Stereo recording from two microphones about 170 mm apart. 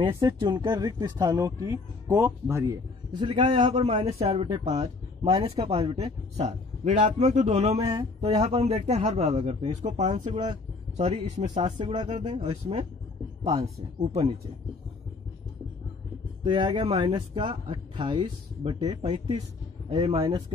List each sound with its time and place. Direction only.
0.0 s a man's voice: 30° right (ahead or behind)
7.8 s speech: 20° right (ahead or behind)
8.2 s a man's voice: 40° right (ahead or behind)
11.8 s speech: 25° right (ahead or behind)
12.1 s speech: 45° right (ahead or behind)
12.4 s a man's voice: 30° right (ahead or behind)
14.0 s a man's voice: 35° right (ahead or behind)
16.4 s speech: 25° right (ahead or behind)